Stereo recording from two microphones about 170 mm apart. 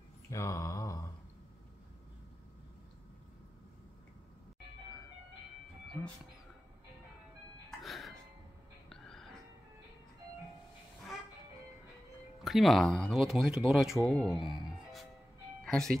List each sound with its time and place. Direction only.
0.3 s a sound: 20° left (ahead or behind)
7.8 s music: centre (ahead or behind)
12.4 s speech: centre (ahead or behind)
15.6 s music: 5° left (ahead or behind)